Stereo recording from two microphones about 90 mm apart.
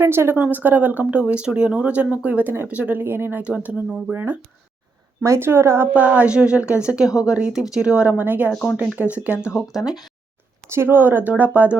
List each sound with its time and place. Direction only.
0.0 s speech: 25° right (ahead or behind)
5.9 s speech: 15° right (ahead or behind)
10.7 s speech: 25° right (ahead or behind)